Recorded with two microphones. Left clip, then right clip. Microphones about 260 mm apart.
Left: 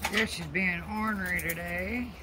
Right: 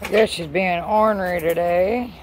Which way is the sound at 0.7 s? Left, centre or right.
Right.